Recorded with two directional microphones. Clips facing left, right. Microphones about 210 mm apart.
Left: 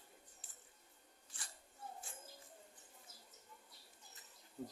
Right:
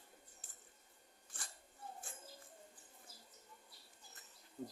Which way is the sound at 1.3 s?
50° right (ahead or behind).